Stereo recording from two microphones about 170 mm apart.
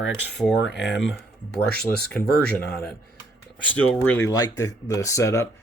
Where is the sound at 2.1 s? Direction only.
5° left (ahead or behind).